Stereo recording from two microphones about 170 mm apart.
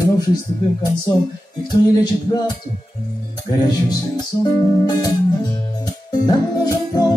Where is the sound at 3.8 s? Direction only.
25° left (ahead or behind).